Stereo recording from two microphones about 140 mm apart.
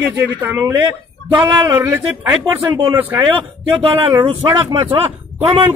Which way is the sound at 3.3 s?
35° right (ahead or behind).